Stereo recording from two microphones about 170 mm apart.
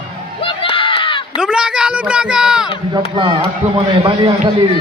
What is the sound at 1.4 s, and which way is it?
Speech, 5° right (ahead or behind).